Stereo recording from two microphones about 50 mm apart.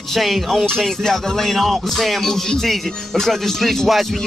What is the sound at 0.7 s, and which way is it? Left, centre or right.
Music, centre.